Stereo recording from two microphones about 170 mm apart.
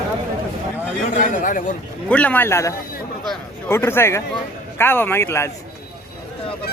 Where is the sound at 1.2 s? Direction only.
50° left (ahead or behind).